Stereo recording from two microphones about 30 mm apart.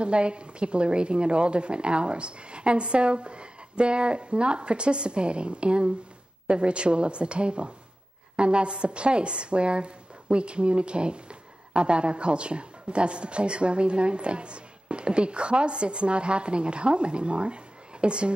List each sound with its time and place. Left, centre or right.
0.0 s a woman's voice: right